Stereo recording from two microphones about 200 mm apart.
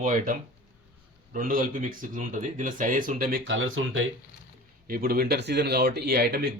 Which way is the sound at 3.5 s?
80° right.